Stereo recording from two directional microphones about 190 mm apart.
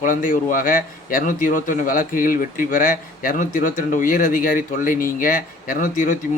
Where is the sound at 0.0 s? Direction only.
45° left (ahead or behind).